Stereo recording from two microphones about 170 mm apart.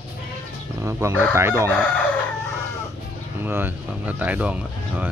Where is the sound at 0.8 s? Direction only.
15° right (ahead or behind).